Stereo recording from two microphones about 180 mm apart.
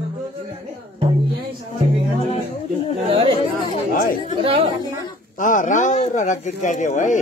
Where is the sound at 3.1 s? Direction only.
30° right (ahead or behind).